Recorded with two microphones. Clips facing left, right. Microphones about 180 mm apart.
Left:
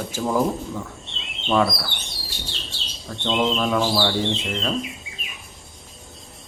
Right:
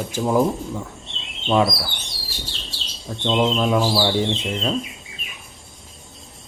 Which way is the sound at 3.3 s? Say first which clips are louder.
Right 2 dB; 15° right (ahead or behind).